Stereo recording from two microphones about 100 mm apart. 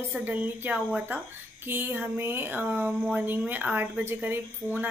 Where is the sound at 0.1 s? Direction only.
15° right (ahead or behind).